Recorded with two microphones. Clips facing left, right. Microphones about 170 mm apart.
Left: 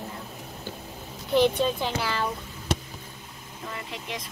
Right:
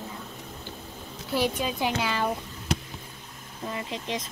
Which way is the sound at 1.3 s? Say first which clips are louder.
Left 5 dB; 10° right (ahead or behind).